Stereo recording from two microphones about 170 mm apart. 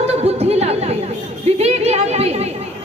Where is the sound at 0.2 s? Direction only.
35° right (ahead or behind).